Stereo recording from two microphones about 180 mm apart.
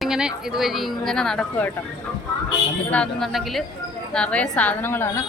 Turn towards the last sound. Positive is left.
turn(degrees=10)  # may be behind; listen again after turning